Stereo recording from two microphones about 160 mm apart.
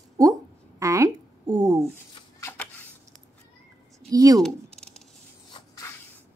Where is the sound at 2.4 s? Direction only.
10° left (ahead or behind).